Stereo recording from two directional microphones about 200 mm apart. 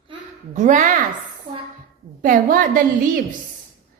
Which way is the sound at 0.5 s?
40° right (ahead or behind).